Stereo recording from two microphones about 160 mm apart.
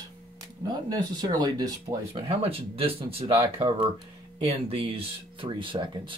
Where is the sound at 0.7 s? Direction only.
25° right (ahead or behind).